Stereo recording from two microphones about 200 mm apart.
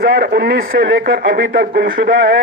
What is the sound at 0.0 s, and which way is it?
Speech, 55° right (ahead or behind).